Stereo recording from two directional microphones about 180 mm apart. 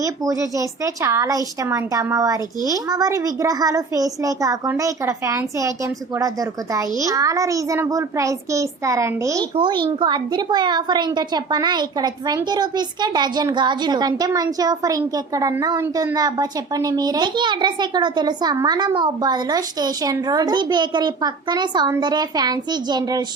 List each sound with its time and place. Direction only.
0.0 s a child's voice: 20° right (ahead or behind)
6.7 s a child's voice: 20° right (ahead or behind)